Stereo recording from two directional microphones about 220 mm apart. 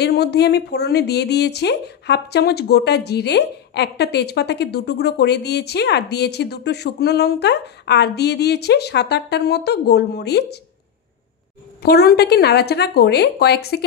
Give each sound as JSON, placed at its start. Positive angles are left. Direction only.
{"t": 0.0, "sound": "speech", "side_deg": 45}
{"t": 11.8, "sound": "speech", "side_deg": 45}